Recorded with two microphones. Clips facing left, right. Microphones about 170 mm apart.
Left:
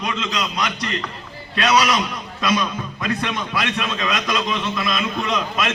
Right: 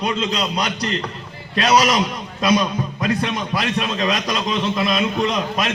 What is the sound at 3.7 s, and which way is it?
A man's voice, 35° right (ahead or behind).